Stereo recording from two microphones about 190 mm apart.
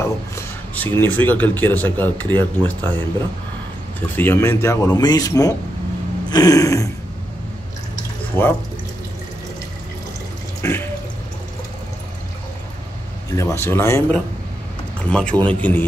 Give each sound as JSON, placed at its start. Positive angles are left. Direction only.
{"t": 0.0, "sound": "speech", "side_deg": 10}
{"t": 6.3, "sound": "throat clearing", "side_deg": 20}
{"t": 8.3, "sound": "speech", "side_deg": -25}
{"t": 10.6, "sound": "speech", "side_deg": 10}
{"t": 13.3, "sound": "speech", "side_deg": 15}